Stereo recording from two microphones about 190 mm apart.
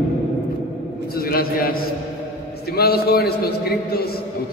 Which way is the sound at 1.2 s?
50° left (ahead or behind).